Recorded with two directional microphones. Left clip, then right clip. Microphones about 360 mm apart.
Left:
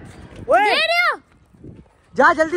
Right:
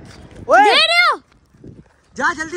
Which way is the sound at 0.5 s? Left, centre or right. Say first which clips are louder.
Right 4 dB; right.